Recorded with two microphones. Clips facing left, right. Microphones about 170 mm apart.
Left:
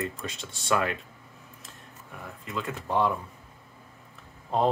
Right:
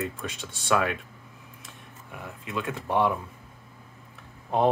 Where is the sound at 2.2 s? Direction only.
5° right (ahead or behind).